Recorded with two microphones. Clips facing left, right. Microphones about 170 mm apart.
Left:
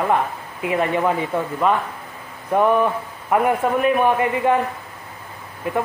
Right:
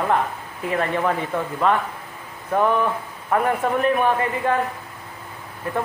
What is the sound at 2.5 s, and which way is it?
Speech, 15° left (ahead or behind).